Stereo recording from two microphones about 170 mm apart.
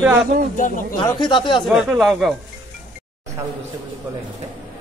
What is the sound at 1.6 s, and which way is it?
Speech, centre (ahead or behind).